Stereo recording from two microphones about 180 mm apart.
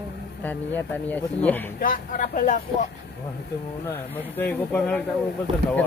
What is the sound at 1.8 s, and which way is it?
Speech, 50° left (ahead or behind).